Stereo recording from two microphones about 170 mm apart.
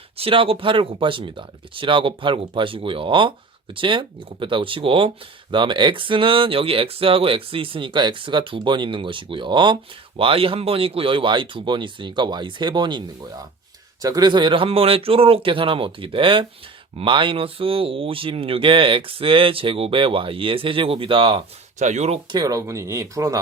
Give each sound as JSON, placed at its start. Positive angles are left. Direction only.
{"t": 0.2, "sound": "speech", "side_deg": -35}
{"t": 21.8, "sound": "speech", "side_deg": -45}
{"t": 22.3, "sound": "speech", "side_deg": -25}